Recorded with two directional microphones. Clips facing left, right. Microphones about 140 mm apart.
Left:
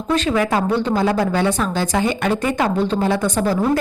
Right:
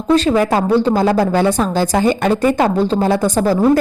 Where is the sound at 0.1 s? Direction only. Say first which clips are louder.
Right 5 dB; 35° right (ahead or behind).